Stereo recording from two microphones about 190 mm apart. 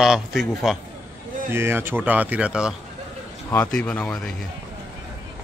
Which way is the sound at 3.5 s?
10° left (ahead or behind).